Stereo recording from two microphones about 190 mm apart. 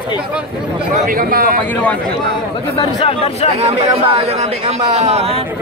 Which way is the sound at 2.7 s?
30° left (ahead or behind).